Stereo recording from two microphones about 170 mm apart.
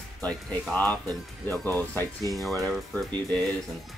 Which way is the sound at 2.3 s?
20° right (ahead or behind).